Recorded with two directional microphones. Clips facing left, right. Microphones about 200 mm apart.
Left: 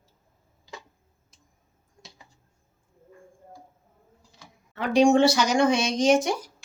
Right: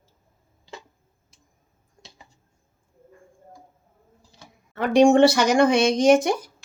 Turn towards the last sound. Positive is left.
turn(degrees=-55)  # may be behind; listen again after turning